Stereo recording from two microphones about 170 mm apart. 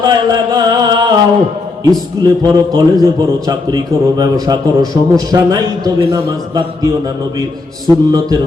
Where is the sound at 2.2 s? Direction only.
25° right (ahead or behind).